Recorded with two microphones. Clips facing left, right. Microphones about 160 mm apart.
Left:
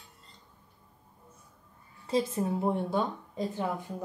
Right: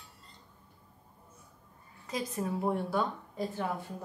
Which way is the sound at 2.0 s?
30° left (ahead or behind).